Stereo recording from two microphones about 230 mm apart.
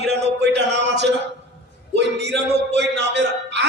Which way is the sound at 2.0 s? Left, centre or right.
Right.